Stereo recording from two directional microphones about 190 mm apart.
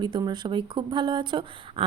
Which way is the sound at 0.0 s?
25° right (ahead or behind).